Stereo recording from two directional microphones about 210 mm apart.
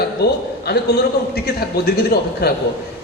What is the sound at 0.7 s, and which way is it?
A man's voice, 50° left (ahead or behind).